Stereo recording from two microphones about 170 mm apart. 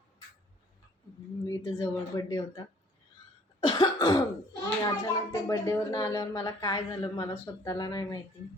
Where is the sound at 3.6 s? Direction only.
25° left (ahead or behind).